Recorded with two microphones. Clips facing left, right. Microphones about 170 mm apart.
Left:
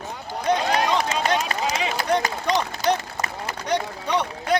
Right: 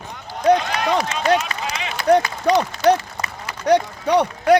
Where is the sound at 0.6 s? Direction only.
35° left (ahead or behind).